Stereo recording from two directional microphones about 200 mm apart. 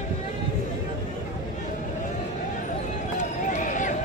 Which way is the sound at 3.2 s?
40° left (ahead or behind).